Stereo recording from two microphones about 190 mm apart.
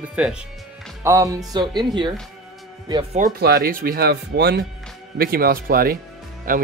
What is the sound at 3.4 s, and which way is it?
Speech, 55° right (ahead or behind).